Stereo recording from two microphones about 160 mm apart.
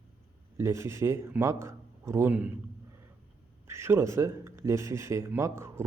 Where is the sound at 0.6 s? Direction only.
15° right (ahead or behind).